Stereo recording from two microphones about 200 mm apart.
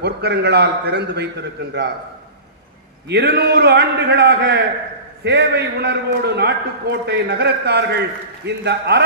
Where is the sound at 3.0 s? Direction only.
55° right (ahead or behind).